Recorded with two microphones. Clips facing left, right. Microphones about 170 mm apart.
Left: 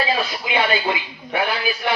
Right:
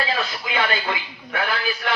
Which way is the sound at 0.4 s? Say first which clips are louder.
Left 4 dB; 20° left (ahead or behind).